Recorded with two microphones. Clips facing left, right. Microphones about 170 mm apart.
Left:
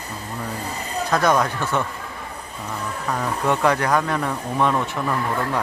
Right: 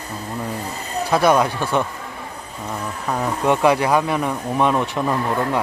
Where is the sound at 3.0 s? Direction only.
10° right (ahead or behind).